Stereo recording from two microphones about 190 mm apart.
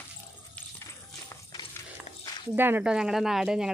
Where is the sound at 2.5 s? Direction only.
10° right (ahead or behind).